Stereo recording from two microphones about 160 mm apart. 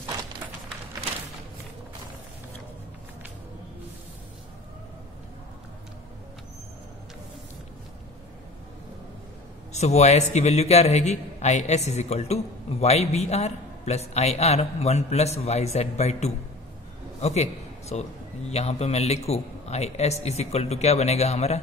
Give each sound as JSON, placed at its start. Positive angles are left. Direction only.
{"t": 9.7, "sound": "a man's voice", "side_deg": 45}